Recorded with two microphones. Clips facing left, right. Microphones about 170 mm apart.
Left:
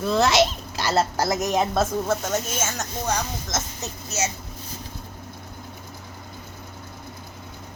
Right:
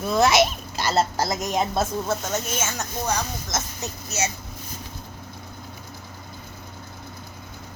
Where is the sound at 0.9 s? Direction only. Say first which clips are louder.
Left 1 dB; 45° left (ahead or behind).